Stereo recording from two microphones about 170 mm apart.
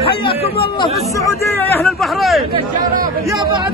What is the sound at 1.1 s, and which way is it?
Speech, 20° left (ahead or behind).